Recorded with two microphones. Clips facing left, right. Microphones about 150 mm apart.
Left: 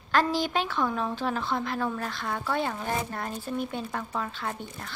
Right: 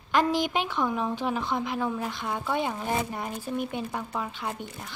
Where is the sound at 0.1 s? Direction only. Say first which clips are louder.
Right 1 dB; 15° right (ahead or behind).